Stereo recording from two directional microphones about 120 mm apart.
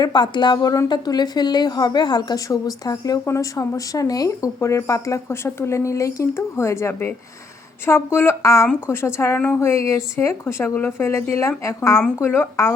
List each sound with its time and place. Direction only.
0.0 s a woman's voice: 40° left (ahead or behind); by 12.7 s 20° left (ahead or behind)